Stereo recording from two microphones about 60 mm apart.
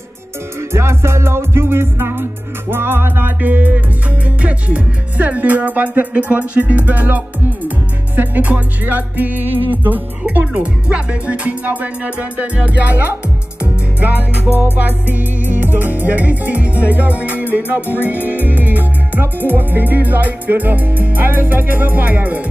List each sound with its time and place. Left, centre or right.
0.6 s music: right
17.8 s music: left
18.2 s music: right